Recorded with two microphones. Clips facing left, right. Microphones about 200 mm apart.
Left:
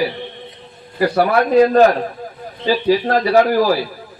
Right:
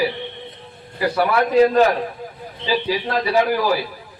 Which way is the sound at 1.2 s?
45° left (ahead or behind).